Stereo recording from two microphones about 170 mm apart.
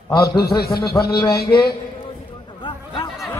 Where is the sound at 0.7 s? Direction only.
20° left (ahead or behind).